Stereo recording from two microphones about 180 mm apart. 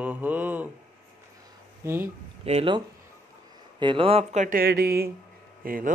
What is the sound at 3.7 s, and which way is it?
Speech, 25° right (ahead or behind).